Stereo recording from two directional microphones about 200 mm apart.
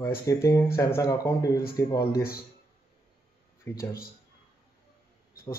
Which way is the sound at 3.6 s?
15° left (ahead or behind).